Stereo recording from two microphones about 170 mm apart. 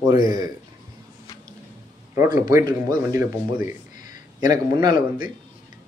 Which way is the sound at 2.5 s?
20° right (ahead or behind).